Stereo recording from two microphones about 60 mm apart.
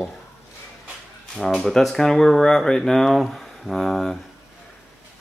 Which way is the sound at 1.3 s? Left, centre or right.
Centre.